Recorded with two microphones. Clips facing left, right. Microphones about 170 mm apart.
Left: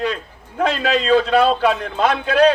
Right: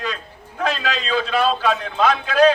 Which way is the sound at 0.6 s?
60° left (ahead or behind).